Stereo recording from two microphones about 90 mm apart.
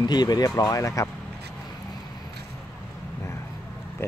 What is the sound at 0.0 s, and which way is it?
Speech, 50° left (ahead or behind).